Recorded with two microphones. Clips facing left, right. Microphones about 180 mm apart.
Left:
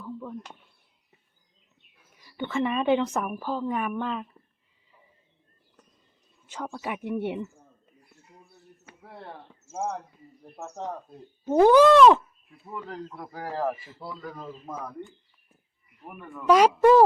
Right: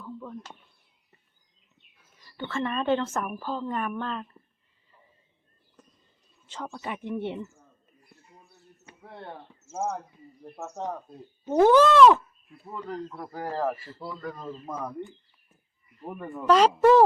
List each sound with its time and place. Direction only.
0.0 s a sound: 5° left (ahead or behind)
2.1 s speech: 15° left (ahead or behind)
6.5 s speech: 5° left (ahead or behind)
9.0 s speech: 5° left (ahead or behind)
11.4 s speech: 10° left (ahead or behind)
12.9 s speech: 5° left (ahead or behind)
13.7 s speech: 15° left (ahead or behind)
14.1 s speech: centre (ahead or behind)
16.2 s speech: 35° right (ahead or behind)
16.5 s speech: 10° left (ahead or behind)